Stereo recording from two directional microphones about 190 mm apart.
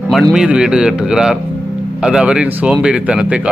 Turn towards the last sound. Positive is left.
turn(degrees=-5)  # may be behind; listen again after turning